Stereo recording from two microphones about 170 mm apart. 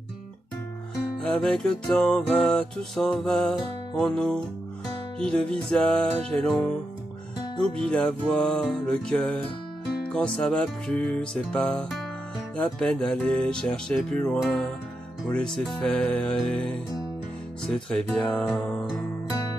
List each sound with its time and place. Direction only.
1.2 s music: 5° left (ahead or behind)
7.8 s music: 5° left (ahead or behind)
17.8 s music: 5° left (ahead or behind)